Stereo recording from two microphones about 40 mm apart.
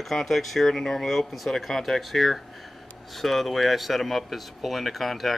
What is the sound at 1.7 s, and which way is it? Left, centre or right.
Speech, centre.